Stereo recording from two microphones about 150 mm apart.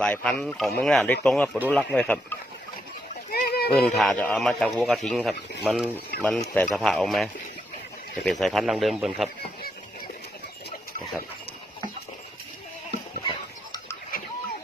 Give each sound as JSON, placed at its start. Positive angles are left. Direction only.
{"t": 0.0, "sound": "speech", "side_deg": 10}
{"t": 3.3, "sound": "a sound", "side_deg": 90}
{"t": 3.8, "sound": "speech", "side_deg": 5}
{"t": 6.2, "sound": "speech", "side_deg": 5}